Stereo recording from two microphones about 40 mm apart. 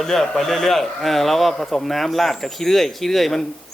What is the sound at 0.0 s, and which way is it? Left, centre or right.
Speech, centre.